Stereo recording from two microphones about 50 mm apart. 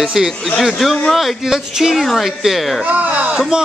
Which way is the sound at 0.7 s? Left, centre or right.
Centre.